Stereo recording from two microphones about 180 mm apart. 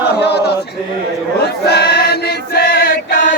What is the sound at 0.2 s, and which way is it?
Choir, 65° left (ahead or behind).